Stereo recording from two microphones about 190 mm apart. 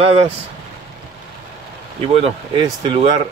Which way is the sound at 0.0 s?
30° right (ahead or behind).